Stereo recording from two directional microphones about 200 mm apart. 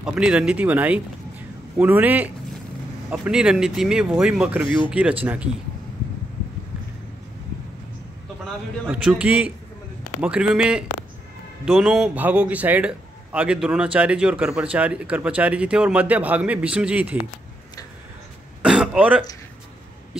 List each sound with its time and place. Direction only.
0.0 s a man's voice: 5° right (ahead or behind)
4.6 s speech: 25° left (ahead or behind)
4.9 s a man's voice: 5° right (ahead or behind)
8.8 s a man's voice: 5° right (ahead or behind)
18.6 s throat clearing: 5° right (ahead or behind)